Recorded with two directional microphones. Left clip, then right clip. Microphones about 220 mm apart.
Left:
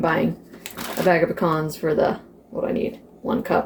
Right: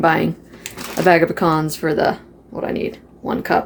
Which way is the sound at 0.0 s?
40° right (ahead or behind).